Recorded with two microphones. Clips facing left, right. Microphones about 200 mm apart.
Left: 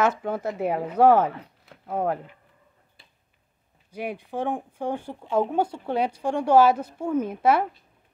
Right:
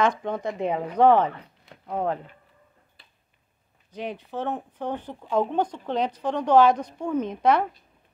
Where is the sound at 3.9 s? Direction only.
10° left (ahead or behind).